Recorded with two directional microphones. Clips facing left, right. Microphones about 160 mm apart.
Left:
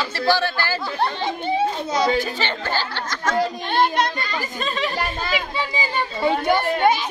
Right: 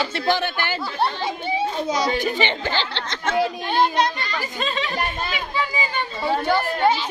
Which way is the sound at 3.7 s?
55° left (ahead or behind).